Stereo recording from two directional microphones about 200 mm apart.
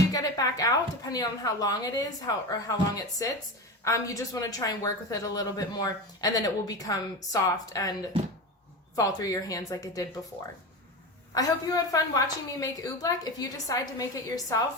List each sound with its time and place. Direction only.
0.1 s speech: 15° left (ahead or behind)
9.0 s speech: 15° left (ahead or behind)
11.3 s speech: 15° left (ahead or behind)